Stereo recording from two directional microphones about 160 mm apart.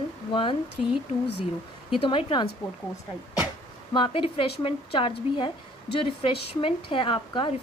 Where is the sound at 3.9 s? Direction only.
30° left (ahead or behind).